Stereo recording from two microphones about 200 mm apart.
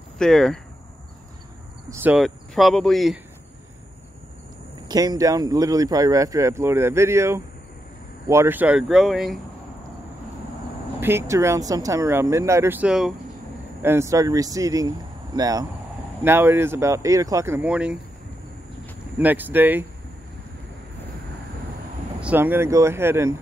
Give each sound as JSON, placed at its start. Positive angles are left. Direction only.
{"t": 0.2, "sound": "speech", "side_deg": 5}
{"t": 2.1, "sound": "speech", "side_deg": 0}
{"t": 4.8, "sound": "speech", "side_deg": -20}
{"t": 11.0, "sound": "speech", "side_deg": -10}
{"t": 13.8, "sound": "speech", "side_deg": -15}
{"t": 19.1, "sound": "speech", "side_deg": -10}
{"t": 22.2, "sound": "speech", "side_deg": -10}